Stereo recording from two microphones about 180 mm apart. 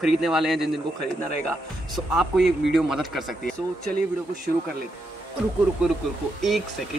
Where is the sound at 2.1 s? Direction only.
Centre (ahead or behind).